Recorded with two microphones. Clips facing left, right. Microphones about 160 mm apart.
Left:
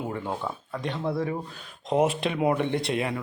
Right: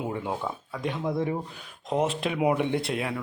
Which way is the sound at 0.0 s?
10° right (ahead or behind).